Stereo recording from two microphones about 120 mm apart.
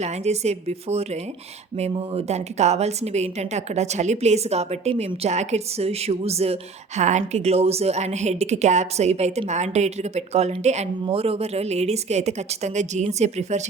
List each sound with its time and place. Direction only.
0.0 s a woman's voice: 65° right (ahead or behind)
11.0 s a woman's voice: 55° right (ahead or behind); by 13.6 s 70° right (ahead or behind)